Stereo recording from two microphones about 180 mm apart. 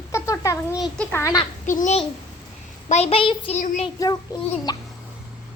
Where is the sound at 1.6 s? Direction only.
45° left (ahead or behind).